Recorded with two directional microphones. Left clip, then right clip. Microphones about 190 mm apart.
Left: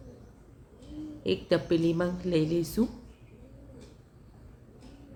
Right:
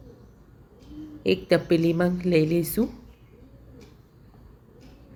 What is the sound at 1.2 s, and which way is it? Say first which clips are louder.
Speech: right 6 dB; 15° right (ahead or behind).